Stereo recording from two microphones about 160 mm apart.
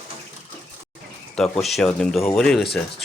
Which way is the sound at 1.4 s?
Centre (ahead or behind).